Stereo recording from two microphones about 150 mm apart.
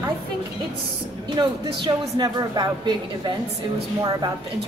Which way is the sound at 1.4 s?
25° right (ahead or behind).